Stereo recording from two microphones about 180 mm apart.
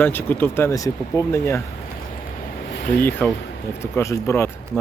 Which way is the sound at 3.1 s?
10° left (ahead or behind).